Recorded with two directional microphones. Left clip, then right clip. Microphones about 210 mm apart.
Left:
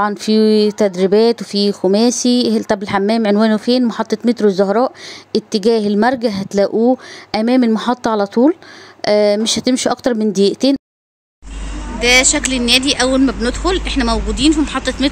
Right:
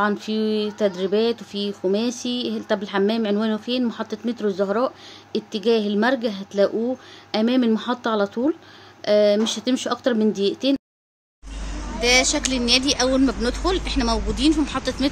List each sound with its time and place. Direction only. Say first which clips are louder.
0.0 s speech: left 8 dB; 35° left (ahead or behind)
12.0 s speech: left 6 dB; centre (ahead or behind)